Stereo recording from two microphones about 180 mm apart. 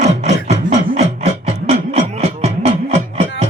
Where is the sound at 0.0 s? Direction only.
40° right (ahead or behind).